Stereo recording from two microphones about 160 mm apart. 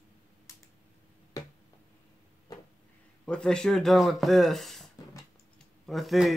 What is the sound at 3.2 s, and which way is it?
Speech, 5° left (ahead or behind).